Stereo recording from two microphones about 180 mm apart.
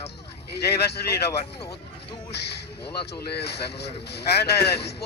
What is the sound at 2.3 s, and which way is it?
Speech, 65° left (ahead or behind).